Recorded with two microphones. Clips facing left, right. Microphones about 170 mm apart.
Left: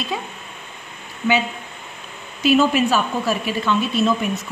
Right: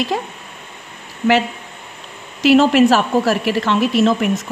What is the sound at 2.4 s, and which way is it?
Speech, 90° right.